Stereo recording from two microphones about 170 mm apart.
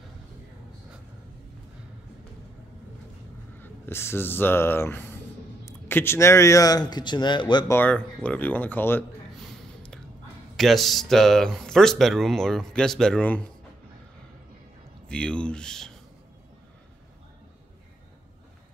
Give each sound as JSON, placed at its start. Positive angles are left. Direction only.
{"t": 3.6, "sound": "speech", "side_deg": 15}
{"t": 7.7, "sound": "speech", "side_deg": 10}
{"t": 10.5, "sound": "speech", "side_deg": 0}
{"t": 15.0, "sound": "speech", "side_deg": 5}